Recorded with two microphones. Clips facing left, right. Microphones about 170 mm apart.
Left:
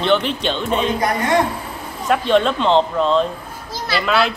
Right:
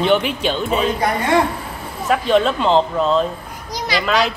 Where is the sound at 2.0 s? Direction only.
Centre (ahead or behind).